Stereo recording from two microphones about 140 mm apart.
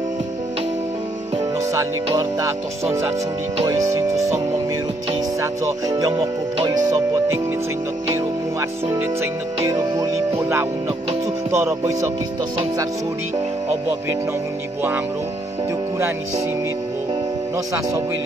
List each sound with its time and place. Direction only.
3.6 s speech: 25° right (ahead or behind)
5.4 s speech: 25° right (ahead or behind)
8.5 s speech: 20° right (ahead or behind)